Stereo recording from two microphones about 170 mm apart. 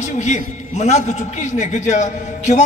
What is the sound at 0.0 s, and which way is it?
A man's voice, 45° left (ahead or behind).